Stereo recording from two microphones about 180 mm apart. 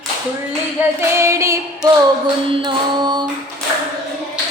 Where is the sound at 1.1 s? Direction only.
15° right (ahead or behind).